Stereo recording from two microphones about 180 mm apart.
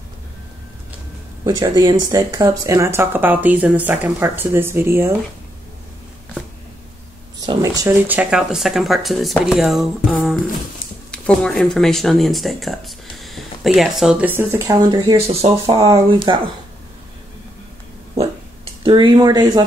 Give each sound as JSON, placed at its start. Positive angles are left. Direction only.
{"t": 1.4, "sound": "speech", "side_deg": -20}
{"t": 7.3, "sound": "speech", "side_deg": -20}
{"t": 15.2, "sound": "speech", "side_deg": -35}
{"t": 18.8, "sound": "speech", "side_deg": -30}